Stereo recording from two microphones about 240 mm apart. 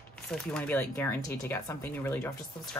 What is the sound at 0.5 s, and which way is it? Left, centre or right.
Speech, centre.